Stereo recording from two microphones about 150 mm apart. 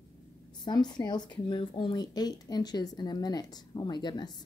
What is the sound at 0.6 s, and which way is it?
Speech, 30° left (ahead or behind).